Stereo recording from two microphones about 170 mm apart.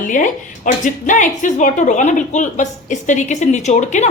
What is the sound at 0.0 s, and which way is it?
Speech, 50° left (ahead or behind).